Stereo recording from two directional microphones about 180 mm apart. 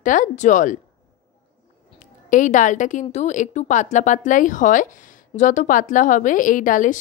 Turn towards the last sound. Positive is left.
turn(degrees=45)  # may be behind; listen again after turning